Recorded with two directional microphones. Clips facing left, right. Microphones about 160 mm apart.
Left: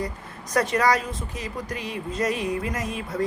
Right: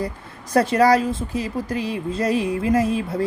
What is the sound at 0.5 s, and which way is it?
A woman's voice, 30° right (ahead or behind).